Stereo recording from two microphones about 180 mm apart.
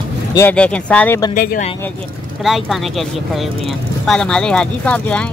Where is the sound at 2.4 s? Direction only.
Centre (ahead or behind).